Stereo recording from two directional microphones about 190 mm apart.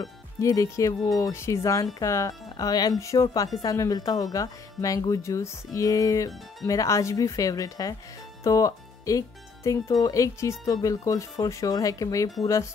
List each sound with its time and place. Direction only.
0.0 s speech: 15° left (ahead or behind)